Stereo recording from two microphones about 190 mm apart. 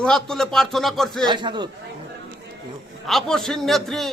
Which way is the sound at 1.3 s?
25° right (ahead or behind).